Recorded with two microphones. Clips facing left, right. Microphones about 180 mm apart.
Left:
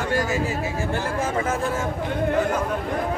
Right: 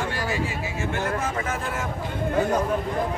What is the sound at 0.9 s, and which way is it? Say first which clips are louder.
Speech: left 1 dB; 30° left (ahead or behind).